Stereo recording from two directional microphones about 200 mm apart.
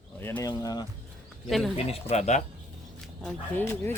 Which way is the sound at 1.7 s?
30° left (ahead or behind).